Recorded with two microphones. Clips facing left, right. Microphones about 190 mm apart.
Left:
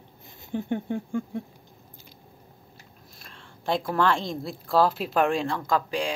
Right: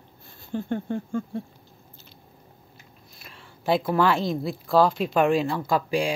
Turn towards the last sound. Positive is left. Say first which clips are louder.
# right 2 dB
turn(degrees=-10)  # may be behind; listen again after turning